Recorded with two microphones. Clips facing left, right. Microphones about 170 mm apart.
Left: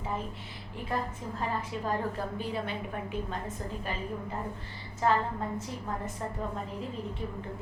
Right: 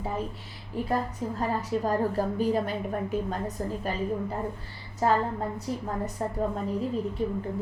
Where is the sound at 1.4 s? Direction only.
40° right (ahead or behind).